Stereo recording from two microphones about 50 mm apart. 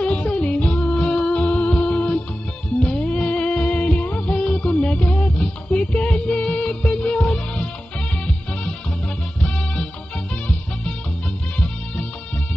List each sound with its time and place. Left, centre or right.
0.0 s music: left